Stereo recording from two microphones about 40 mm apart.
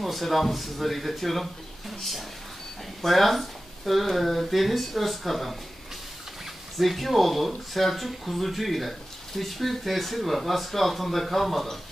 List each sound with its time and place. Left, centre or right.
0.0 s speech: centre
6.8 s speech: centre